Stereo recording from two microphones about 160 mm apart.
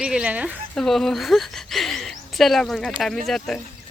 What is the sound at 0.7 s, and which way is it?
Speech, 5° left (ahead or behind).